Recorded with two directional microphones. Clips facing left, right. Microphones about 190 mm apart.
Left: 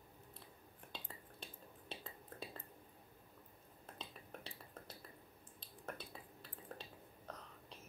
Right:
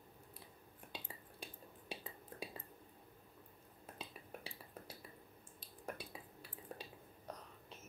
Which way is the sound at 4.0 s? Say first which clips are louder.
Right 1 dB; 10° right (ahead or behind).